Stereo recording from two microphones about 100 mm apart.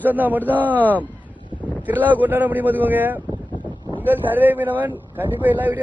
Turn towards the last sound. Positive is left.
turn(degrees=-20)  # may be behind; listen again after turning